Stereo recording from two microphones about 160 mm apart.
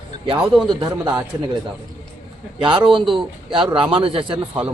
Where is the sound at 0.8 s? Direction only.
25° right (ahead or behind).